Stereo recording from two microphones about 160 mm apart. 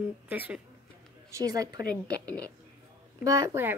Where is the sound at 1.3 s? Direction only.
20° right (ahead or behind).